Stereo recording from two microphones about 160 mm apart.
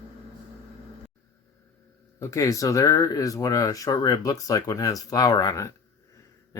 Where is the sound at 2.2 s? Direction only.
20° left (ahead or behind).